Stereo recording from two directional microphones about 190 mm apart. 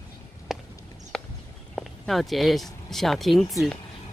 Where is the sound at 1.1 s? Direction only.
5° left (ahead or behind).